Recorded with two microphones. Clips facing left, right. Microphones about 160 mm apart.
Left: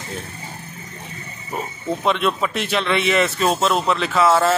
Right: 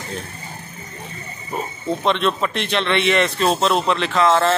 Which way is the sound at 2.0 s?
5° left (ahead or behind).